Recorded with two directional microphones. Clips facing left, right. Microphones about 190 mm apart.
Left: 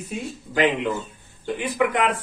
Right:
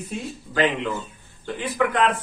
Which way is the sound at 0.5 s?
15° left (ahead or behind).